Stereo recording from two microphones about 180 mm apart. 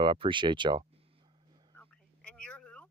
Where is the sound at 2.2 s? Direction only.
5° left (ahead or behind).